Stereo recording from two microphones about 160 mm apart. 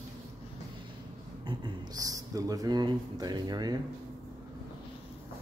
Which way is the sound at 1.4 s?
25° right (ahead or behind).